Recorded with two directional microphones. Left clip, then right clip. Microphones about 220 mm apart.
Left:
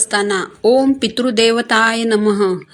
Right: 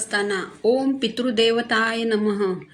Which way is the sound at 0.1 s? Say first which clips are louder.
Left 5 dB; 40° left (ahead or behind).